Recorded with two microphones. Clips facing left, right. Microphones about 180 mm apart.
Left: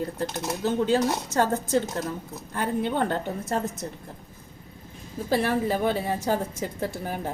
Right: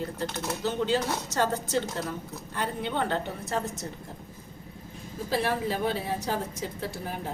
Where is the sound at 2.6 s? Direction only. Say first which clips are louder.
Left 5 dB; 50° left (ahead or behind).